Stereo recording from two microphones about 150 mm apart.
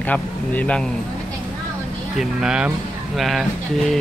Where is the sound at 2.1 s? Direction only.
5° right (ahead or behind).